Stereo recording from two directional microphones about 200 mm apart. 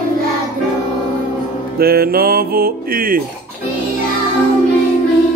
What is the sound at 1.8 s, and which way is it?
Music, 50° right (ahead or behind).